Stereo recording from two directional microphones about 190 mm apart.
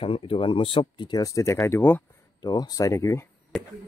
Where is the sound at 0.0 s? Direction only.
30° left (ahead or behind).